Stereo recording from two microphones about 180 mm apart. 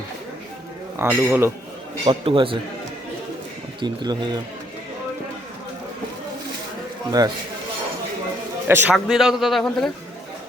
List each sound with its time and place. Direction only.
0.9 s a man's voice: 10° right (ahead or behind)
2.0 s a man's voice: 30° right (ahead or behind)
3.8 s a man's voice: 25° right (ahead or behind)
8.6 s a man's voice: 10° right (ahead or behind)
9.0 s speech: centre (ahead or behind)